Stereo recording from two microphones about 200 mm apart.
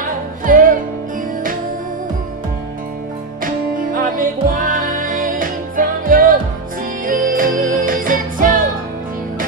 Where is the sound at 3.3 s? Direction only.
45° right (ahead or behind).